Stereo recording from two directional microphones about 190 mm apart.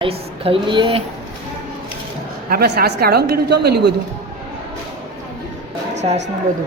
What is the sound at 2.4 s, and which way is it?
A woman's voice, 55° right (ahead or behind).